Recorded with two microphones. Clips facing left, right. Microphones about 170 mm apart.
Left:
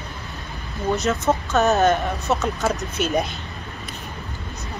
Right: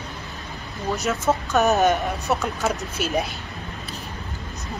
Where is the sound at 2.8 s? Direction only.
Centre (ahead or behind).